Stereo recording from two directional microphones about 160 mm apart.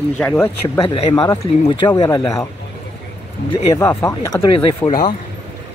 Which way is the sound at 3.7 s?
15° left (ahead or behind).